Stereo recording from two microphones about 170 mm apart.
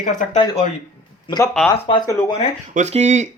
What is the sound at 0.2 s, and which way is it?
Speech, 50° left (ahead or behind).